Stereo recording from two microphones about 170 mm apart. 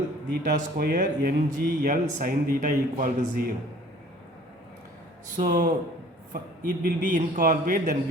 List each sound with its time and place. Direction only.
0.5 s speech: 55° right (ahead or behind)
5.4 s a man's voice: 55° right (ahead or behind)